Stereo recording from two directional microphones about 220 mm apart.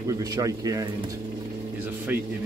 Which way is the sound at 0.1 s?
15° right (ahead or behind).